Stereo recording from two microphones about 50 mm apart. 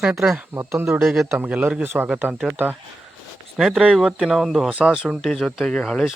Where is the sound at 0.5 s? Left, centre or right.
Right.